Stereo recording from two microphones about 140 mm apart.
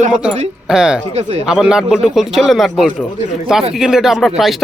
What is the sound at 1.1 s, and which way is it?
Speech, 55° right (ahead or behind).